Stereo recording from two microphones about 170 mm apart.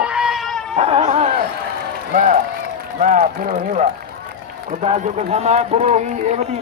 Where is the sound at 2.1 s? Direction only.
50° right (ahead or behind).